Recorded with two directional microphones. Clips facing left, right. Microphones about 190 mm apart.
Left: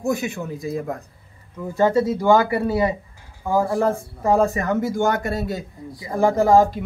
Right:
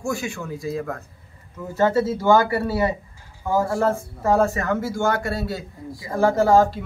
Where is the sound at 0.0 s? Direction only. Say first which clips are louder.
Left 4 dB; 20° left (ahead or behind).